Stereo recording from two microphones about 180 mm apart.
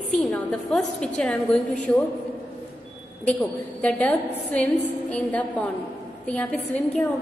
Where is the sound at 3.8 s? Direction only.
5° left (ahead or behind).